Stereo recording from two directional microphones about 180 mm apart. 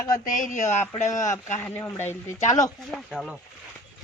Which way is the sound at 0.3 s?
45° left (ahead or behind).